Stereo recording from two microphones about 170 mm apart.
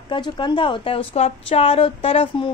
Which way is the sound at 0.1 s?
30° left (ahead or behind).